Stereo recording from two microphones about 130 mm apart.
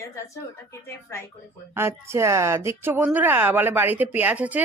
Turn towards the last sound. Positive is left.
turn(degrees=-10)  # may be behind; listen again after turning